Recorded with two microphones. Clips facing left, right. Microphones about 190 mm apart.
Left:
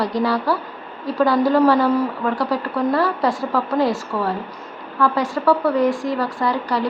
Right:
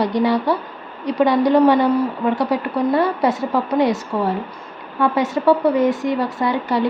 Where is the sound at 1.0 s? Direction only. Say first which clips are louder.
Right 1 dB; 20° right (ahead or behind).